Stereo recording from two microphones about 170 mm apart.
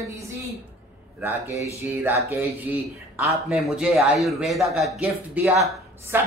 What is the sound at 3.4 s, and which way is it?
Speech, centre (ahead or behind).